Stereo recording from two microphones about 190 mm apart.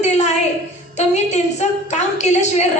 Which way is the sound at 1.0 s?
35° left (ahead or behind).